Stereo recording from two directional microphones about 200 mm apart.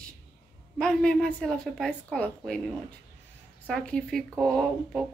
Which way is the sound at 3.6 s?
5° left (ahead or behind).